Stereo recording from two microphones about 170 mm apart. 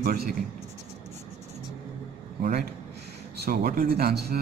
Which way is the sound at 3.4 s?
55° right (ahead or behind).